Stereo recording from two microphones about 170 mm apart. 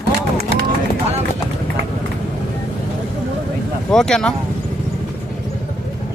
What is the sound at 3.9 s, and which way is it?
Speech, 5° left (ahead or behind).